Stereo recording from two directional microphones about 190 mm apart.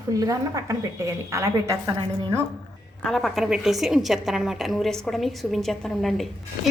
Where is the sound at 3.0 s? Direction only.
Centre (ahead or behind).